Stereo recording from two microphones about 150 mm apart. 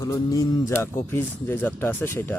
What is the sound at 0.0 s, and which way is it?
Speech, 20° left (ahead or behind).